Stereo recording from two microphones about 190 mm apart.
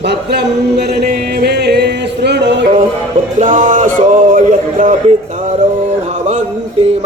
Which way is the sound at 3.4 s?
40° right (ahead or behind).